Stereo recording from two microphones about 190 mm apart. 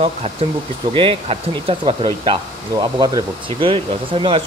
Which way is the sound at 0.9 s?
25° right (ahead or behind).